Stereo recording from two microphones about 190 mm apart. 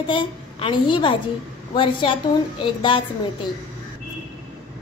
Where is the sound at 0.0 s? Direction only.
25° left (ahead or behind).